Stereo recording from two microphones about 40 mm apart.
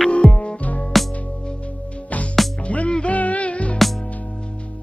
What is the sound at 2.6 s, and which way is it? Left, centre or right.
Music, left.